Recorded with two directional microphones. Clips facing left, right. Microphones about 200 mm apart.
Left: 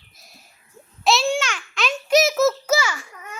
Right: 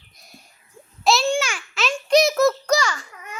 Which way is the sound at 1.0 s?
Centre (ahead or behind).